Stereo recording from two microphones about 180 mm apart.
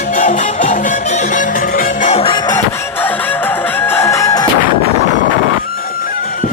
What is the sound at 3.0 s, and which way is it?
Music, 10° left (ahead or behind).